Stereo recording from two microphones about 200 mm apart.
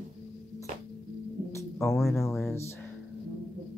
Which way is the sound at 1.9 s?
Centre (ahead or behind).